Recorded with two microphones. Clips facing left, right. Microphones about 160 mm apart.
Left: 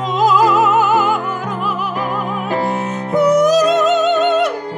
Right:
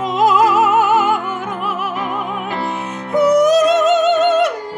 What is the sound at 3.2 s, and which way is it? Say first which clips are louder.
Music: right 1 dB; centre (ahead or behind).